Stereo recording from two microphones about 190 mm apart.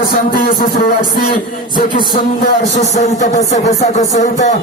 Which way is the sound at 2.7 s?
40° left (ahead or behind).